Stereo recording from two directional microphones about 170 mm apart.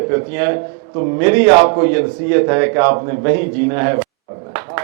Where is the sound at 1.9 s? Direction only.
15° right (ahead or behind).